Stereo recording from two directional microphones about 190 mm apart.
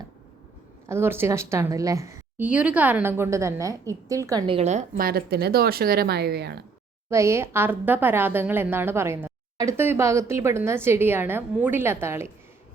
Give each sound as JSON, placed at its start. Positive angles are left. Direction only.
{"t": 0.9, "sound": "a woman's voice", "side_deg": -10}
{"t": 7.1, "sound": "a woman's voice", "side_deg": -15}